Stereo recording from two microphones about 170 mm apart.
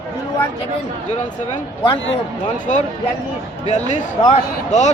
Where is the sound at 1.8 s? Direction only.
35° left (ahead or behind).